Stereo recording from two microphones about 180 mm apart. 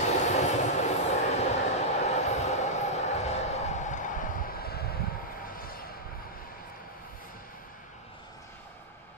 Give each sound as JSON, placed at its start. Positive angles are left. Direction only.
{"t": 0.2, "sound": "train", "side_deg": 40}